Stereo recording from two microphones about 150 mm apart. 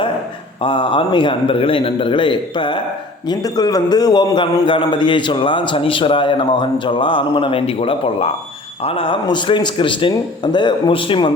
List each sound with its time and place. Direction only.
0.6 s a man's voice: 35° left (ahead or behind)